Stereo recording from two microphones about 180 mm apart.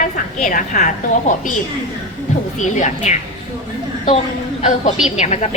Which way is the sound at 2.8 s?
40° left (ahead or behind).